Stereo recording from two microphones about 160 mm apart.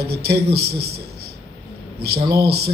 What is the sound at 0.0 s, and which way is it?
A man's voice, 80° right.